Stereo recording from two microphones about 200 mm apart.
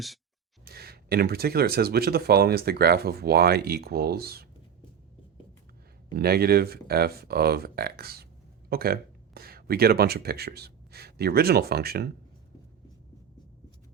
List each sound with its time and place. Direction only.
0.6 s speech: 50° right (ahead or behind)
6.1 s speech: 50° right (ahead or behind)